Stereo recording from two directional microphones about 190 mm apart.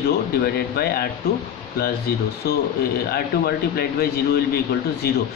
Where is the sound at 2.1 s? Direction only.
55° left (ahead or behind).